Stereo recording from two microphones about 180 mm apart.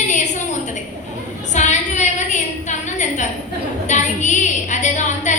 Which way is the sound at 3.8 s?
40° left (ahead or behind).